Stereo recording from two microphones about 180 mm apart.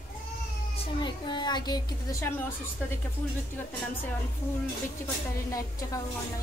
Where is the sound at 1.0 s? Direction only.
25° left (ahead or behind).